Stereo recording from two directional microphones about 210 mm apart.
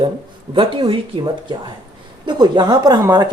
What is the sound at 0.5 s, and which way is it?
Speech, 25° right (ahead or behind).